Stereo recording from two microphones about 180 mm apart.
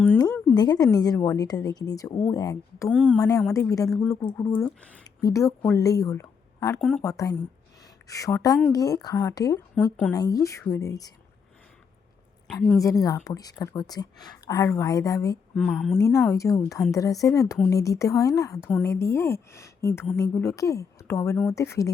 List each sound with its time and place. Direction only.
0.2 s a sound: 10° left (ahead or behind)
0.5 s speech: 20° left (ahead or behind)
2.9 s a woman's voice: 5° right (ahead or behind)
3.2 s speech: 20° left (ahead or behind)
5.0 s a woman's voice: 20° left (ahead or behind)
12.5 s a woman's voice: 5° left (ahead or behind)
12.8 s speech: 20° left (ahead or behind)
15.5 s a woman's voice: centre (ahead or behind)
16.0 s speech: 15° left (ahead or behind)